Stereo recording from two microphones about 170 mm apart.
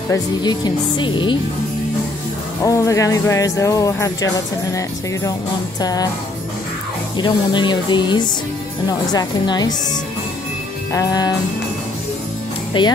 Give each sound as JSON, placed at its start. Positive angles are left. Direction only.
{"t": 0.1, "sound": "speech", "side_deg": 25}
{"t": 2.6, "sound": "speech", "side_deg": 20}
{"t": 5.8, "sound": "speech", "side_deg": 20}
{"t": 7.2, "sound": "speech", "side_deg": 25}
{"t": 10.9, "sound": "speech", "side_deg": 20}
{"t": 12.7, "sound": "speech", "side_deg": 30}